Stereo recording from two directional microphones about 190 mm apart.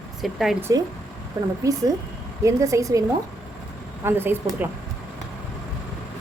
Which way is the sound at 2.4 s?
15° right (ahead or behind).